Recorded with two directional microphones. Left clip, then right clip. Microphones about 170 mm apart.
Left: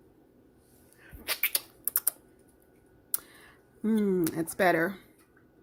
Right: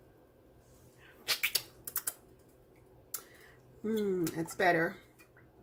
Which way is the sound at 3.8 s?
55° left (ahead or behind).